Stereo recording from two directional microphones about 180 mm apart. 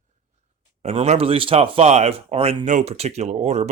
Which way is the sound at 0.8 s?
35° right (ahead or behind).